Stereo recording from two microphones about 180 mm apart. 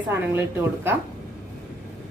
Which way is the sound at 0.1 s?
10° right (ahead or behind).